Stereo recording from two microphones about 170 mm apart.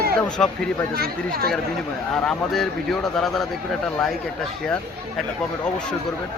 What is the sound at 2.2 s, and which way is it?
Speech, centre (ahead or behind).